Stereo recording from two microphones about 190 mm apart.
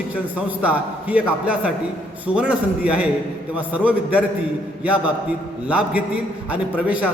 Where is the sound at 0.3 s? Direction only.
5° right (ahead or behind).